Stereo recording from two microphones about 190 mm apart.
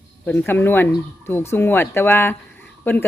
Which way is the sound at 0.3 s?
10° left (ahead or behind).